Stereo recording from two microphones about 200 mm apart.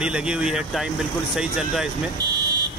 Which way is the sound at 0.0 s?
5° right (ahead or behind).